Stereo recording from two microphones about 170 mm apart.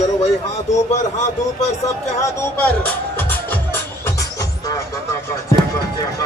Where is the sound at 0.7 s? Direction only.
40° left (ahead or behind).